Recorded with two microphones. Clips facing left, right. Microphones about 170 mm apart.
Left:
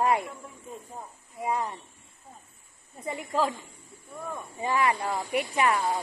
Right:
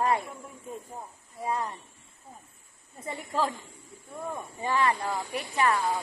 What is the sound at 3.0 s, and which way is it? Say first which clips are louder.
Speech: left 2 dB; 15° left (ahead or behind).